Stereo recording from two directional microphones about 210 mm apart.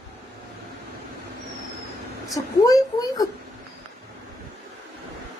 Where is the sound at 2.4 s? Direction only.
20° left (ahead or behind).